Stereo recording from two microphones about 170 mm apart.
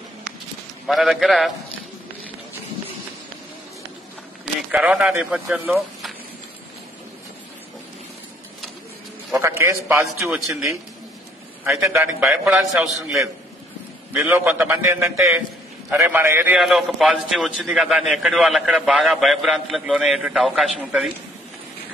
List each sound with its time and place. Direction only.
0.8 s a man's voice: centre (ahead or behind)
4.6 s a man's voice: 5° right (ahead or behind)
9.3 s a man's voice: 15° right (ahead or behind)
11.8 s a man's voice: 15° right (ahead or behind); by 13.3 s centre (ahead or behind)
14.1 s a man's voice: 10° right (ahead or behind)